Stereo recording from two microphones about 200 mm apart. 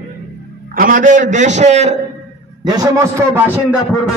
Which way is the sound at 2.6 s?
20° right (ahead or behind).